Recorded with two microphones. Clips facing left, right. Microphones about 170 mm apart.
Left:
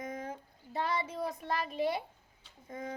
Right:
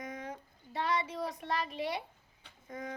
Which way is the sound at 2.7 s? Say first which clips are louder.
Left 1 dB; 25° left (ahead or behind).